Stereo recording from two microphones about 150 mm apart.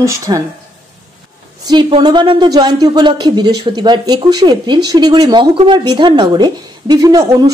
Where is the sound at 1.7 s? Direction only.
35° right (ahead or behind).